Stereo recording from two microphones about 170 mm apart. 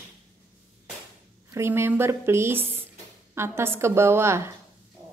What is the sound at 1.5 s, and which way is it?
A woman's voice, 15° right (ahead or behind).